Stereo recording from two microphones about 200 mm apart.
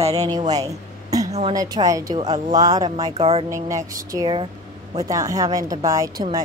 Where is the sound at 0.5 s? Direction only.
15° right (ahead or behind).